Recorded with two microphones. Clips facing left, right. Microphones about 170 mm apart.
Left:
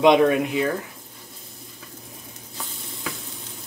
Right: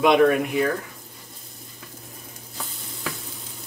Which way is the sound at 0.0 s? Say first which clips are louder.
Left 1 dB; 20° left (ahead or behind).